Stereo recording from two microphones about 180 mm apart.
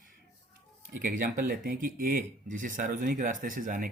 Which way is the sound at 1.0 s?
50° right (ahead or behind).